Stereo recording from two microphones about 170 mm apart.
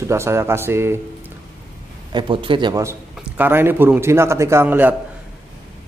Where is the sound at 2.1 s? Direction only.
30° right (ahead or behind).